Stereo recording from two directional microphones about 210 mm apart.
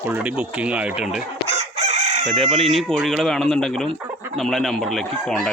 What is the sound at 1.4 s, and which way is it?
Chicken, 30° right (ahead or behind).